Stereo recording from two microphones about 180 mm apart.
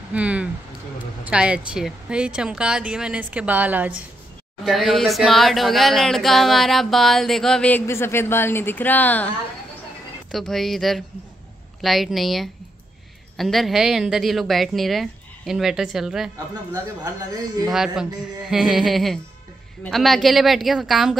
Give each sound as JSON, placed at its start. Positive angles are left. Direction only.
{"t": 0.1, "sound": "speech", "side_deg": -5}
{"t": 10.3, "sound": "speech", "side_deg": 0}
{"t": 16.7, "sound": "speech", "side_deg": -20}
{"t": 17.6, "sound": "speech", "side_deg": -5}